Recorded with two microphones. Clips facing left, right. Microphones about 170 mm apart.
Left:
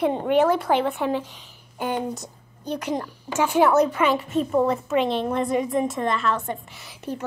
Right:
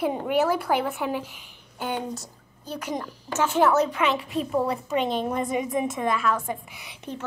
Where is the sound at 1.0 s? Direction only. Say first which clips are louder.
Left 4 dB; 30° left (ahead or behind).